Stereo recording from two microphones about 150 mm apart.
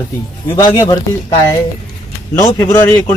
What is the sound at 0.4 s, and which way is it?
Speech, 20° left (ahead or behind).